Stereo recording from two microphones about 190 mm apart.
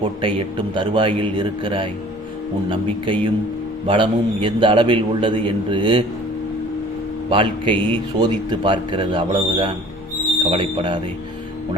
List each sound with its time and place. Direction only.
0.0 s a man's voice: 30° right (ahead or behind)
7.3 s a man's voice: 25° right (ahead or behind)